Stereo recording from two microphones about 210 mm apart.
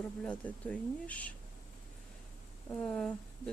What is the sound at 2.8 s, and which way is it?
Speech, 5° left (ahead or behind).